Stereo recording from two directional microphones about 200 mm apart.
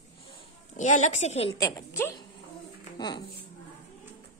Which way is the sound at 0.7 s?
35° left (ahead or behind).